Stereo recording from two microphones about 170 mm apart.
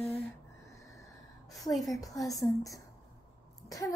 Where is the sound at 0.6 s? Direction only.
15° left (ahead or behind).